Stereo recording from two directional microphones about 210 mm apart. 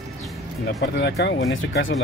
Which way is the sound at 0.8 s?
55° left (ahead or behind).